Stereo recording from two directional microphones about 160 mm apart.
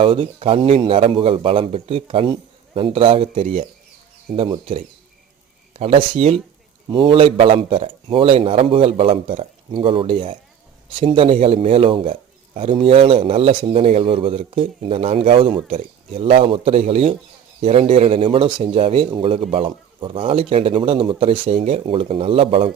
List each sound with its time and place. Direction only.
0.0 s speech: 35° right (ahead or behind)